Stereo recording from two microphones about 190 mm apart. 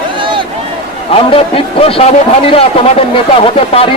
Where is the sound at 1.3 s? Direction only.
30° left (ahead or behind).